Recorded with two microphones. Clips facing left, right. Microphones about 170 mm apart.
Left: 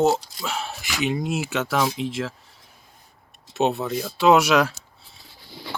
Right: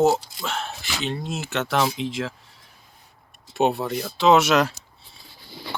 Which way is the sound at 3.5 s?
Centre (ahead or behind).